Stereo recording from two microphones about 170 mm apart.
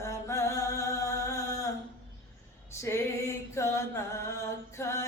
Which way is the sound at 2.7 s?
15° left (ahead or behind).